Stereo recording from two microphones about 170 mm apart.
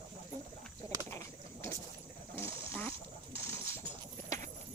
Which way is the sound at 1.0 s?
15° left (ahead or behind).